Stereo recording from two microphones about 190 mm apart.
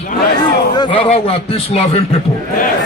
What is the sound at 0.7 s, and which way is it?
Speech, 25° left (ahead or behind).